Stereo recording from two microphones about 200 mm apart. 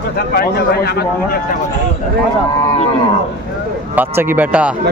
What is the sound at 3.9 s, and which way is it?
Speech, 10° right (ahead or behind).